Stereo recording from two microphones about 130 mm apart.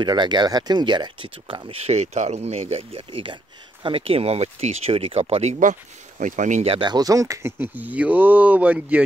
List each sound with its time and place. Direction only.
0.0 s speech: 35° right (ahead or behind); by 6.6 s 75° right (ahead or behind)
6.6 s speech: 50° right (ahead or behind)
6.9 s speech: 30° right (ahead or behind); by 9.0 s 10° right (ahead or behind)